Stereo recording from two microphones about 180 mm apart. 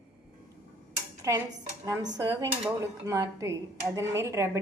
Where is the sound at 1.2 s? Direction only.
15° right (ahead or behind).